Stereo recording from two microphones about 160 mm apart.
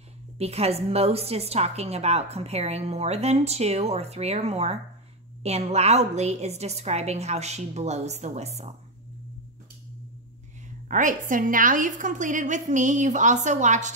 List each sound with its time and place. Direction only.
0.4 s a woman's voice: 40° right (ahead or behind)
10.9 s a woman's voice: 55° right (ahead or behind)